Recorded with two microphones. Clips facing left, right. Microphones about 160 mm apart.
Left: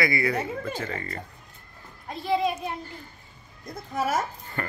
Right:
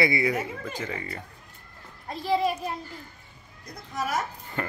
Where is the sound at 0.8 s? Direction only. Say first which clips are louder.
Left 1 dB; 10° right (ahead or behind).